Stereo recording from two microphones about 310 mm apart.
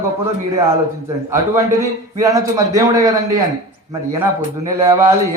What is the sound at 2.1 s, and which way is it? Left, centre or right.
Speech, centre.